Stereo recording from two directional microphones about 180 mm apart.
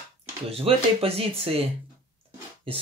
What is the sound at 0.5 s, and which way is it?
Speech, 30° right (ahead or behind).